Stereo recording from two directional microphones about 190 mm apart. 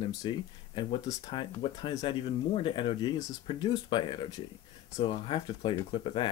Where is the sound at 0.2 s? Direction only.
25° left (ahead or behind).